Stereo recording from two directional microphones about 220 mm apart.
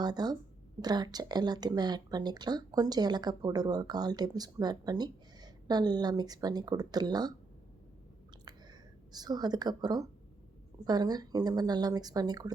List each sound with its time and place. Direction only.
0.0 s a woman's voice: 20° right (ahead or behind)
9.1 s speech: 20° right (ahead or behind)